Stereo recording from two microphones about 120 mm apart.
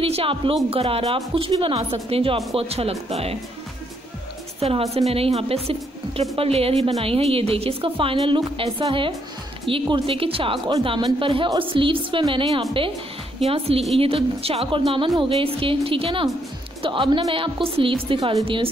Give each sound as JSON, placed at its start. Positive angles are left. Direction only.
{"t": 0.0, "sound": "a woman's voice", "side_deg": -50}
{"t": 4.6, "sound": "a woman's voice", "side_deg": -55}
{"t": 13.5, "sound": "a woman's voice", "side_deg": -55}